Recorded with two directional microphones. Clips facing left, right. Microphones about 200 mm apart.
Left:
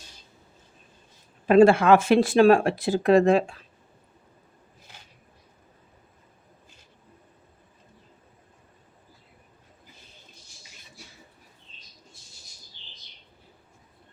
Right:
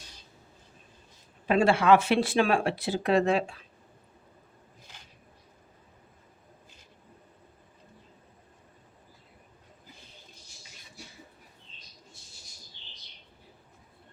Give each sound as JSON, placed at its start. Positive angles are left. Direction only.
{"t": 1.5, "sound": "speech", "side_deg": 50}